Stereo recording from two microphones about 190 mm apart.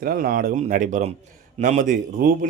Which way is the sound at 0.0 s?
50° right (ahead or behind).